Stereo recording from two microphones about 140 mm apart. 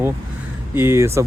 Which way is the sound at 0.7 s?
15° right (ahead or behind).